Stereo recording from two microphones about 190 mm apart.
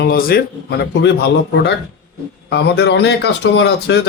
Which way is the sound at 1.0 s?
65° left (ahead or behind).